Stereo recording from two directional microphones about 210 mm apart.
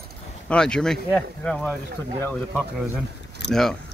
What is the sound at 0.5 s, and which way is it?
Speech, 5° left (ahead or behind).